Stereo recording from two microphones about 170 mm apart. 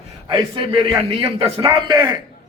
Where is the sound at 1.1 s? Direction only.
30° right (ahead or behind).